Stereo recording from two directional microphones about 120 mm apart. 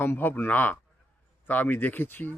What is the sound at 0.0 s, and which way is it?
A man's voice, 15° left (ahead or behind).